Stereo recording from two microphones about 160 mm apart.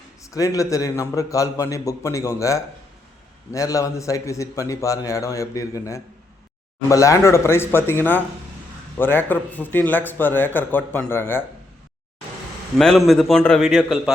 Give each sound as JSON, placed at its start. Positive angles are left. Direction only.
{"t": 0.2, "sound": "a man's voice", "side_deg": 20}
{"t": 12.8, "sound": "a man's voice", "side_deg": 0}